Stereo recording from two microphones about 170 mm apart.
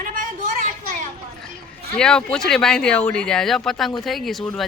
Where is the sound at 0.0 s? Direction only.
50° right (ahead or behind).